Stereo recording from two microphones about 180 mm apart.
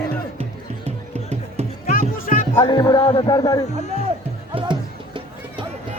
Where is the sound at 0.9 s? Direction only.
35° right (ahead or behind).